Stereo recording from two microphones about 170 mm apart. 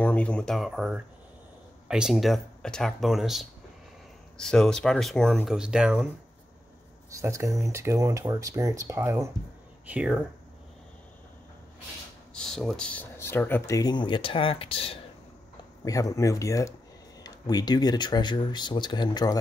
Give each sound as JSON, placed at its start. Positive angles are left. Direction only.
{"t": 0.0, "sound": "speech", "side_deg": 5}
{"t": 7.2, "sound": "speech", "side_deg": -20}
{"t": 12.4, "sound": "speech", "side_deg": 5}
{"t": 15.8, "sound": "speech", "side_deg": 20}